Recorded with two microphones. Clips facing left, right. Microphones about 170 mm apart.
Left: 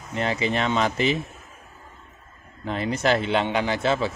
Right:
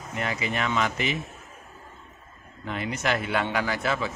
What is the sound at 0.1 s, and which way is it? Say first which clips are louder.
A man's voice: left 5 dB; 30° left (ahead or behind).